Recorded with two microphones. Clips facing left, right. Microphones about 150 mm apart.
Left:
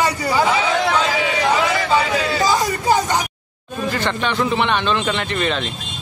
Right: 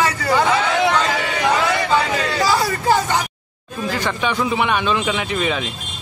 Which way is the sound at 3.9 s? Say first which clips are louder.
Even; 10° right (ahead or behind).